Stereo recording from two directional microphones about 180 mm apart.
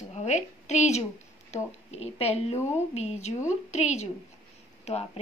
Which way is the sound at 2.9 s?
40° left (ahead or behind).